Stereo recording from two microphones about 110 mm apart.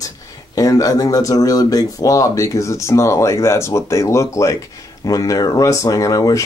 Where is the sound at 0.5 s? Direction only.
35° left (ahead or behind).